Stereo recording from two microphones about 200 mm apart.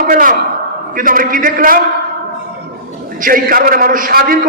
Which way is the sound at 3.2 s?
45° right (ahead or behind).